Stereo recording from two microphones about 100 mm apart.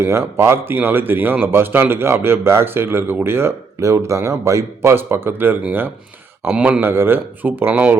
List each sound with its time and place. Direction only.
0.0 s a man's voice: 25° right (ahead or behind)
6.8 s a man's voice: 20° right (ahead or behind)